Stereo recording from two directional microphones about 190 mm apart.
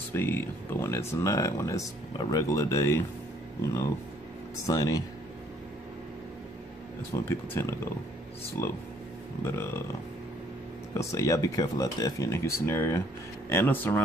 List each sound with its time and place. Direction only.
0.1 s speech: 10° left (ahead or behind)
4.6 s speech: 20° left (ahead or behind)
7.1 s speech: 15° left (ahead or behind)
11.0 s speech: 15° left (ahead or behind)